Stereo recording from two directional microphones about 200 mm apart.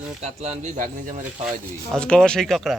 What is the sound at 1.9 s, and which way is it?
Speech, 5° left (ahead or behind).